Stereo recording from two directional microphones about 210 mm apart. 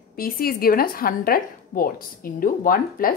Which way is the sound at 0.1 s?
45° left (ahead or behind).